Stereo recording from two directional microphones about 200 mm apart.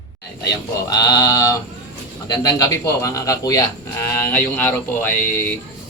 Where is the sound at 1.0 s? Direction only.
20° left (ahead or behind).